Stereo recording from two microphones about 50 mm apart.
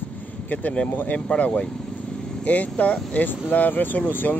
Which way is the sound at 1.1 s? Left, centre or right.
Left.